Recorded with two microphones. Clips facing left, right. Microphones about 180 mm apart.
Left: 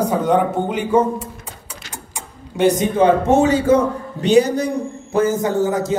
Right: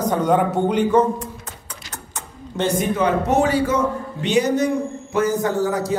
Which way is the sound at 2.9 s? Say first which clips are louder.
Left 5 dB; 25° left (ahead or behind).